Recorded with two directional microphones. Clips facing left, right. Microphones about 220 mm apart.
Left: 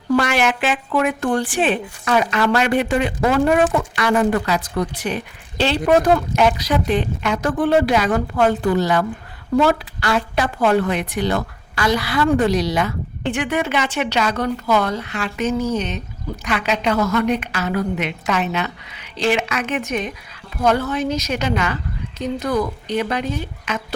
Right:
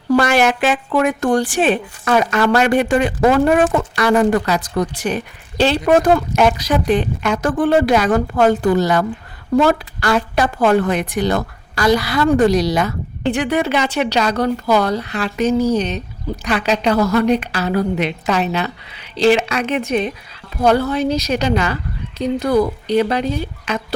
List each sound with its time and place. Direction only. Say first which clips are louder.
0.1 s a woman's voice: right 3 dB; 40° right (ahead or behind)